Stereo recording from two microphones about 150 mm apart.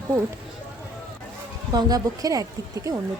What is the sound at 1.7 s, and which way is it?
Speech, 25° right (ahead or behind).